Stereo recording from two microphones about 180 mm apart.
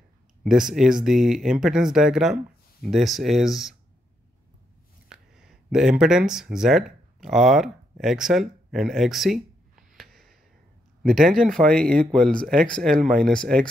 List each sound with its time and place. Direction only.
0.4 s speech: 5° right (ahead or behind)
5.1 s speech: 5° right (ahead or behind)
9.9 s a sound: centre (ahead or behind)
11.0 s speech: centre (ahead or behind)